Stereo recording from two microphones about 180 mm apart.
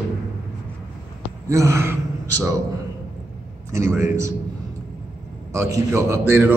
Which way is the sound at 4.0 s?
15° right (ahead or behind).